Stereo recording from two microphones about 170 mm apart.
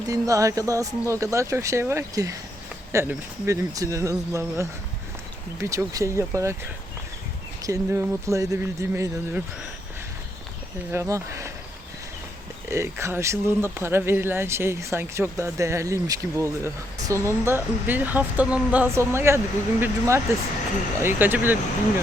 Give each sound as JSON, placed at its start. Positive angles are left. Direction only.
{"t": 0.1, "sound": "speech", "side_deg": -20}
{"t": 7.6, "sound": "speech", "side_deg": -15}
{"t": 10.9, "sound": "speech", "side_deg": -15}
{"t": 12.7, "sound": "speech", "side_deg": -15}